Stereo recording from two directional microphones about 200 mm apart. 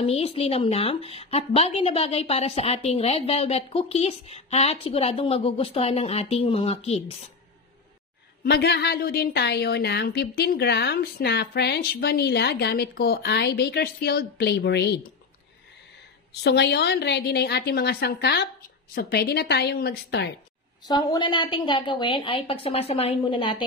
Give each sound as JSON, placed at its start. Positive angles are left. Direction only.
{"t": 0.0, "sound": "a woman's voice", "side_deg": 30}
{"t": 8.5, "sound": "a woman's voice", "side_deg": 55}
{"t": 16.4, "sound": "a woman's voice", "side_deg": 55}
{"t": 20.8, "sound": "a woman's voice", "side_deg": 20}